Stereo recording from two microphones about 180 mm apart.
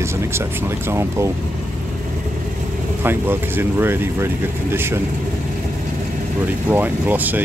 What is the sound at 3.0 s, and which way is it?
Speech, 10° right (ahead or behind).